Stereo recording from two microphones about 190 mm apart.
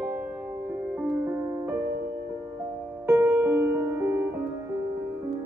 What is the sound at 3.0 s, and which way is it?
Music, 10° right (ahead or behind).